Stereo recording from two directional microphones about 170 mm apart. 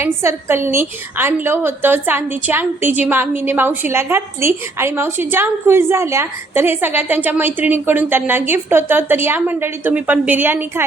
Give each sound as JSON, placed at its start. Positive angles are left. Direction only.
{"t": 0.0, "sound": "a woman's voice", "side_deg": -15}